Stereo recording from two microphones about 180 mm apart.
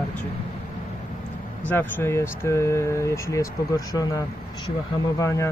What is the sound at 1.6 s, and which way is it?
Speech, 10° left (ahead or behind).